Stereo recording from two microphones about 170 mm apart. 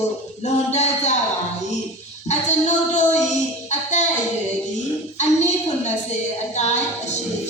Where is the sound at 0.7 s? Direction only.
40° left (ahead or behind).